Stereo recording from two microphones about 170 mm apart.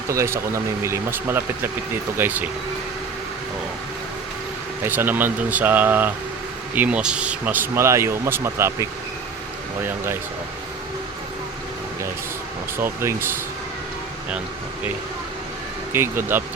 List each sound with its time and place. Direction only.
0.1 s speech: 15° right (ahead or behind)
4.8 s speech: 10° right (ahead or behind)
12.7 s speech: 15° right (ahead or behind)
15.9 s speech: 15° right (ahead or behind)